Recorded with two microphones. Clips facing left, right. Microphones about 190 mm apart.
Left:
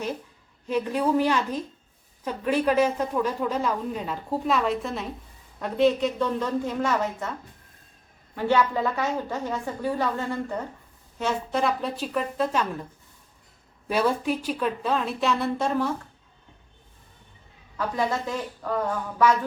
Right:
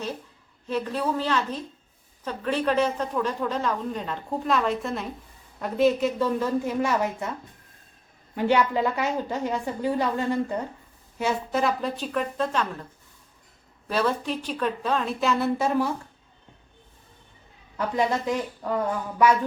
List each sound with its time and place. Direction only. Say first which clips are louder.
0.7 s a woman's voice: left 3 dB; 10° left (ahead or behind); by 7.3 s 10° right (ahead or behind)
8.4 s a woman's voice: right 1 dB; 15° right (ahead or behind)
11.2 s a woman's voice: right 1 dB; 5° right (ahead or behind)
13.8 s a woman's voice: left 2 dB; 10° left (ahead or behind); by 15.9 s 5° right (ahead or behind)
17.7 s a woman's voice: right 2 dB; 20° right (ahead or behind)